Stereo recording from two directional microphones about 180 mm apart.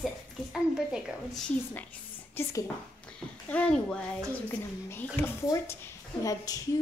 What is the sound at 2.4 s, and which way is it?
A woman's voice, 10° left (ahead or behind).